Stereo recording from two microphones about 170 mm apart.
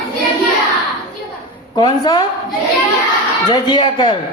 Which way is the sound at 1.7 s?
25° left (ahead or behind).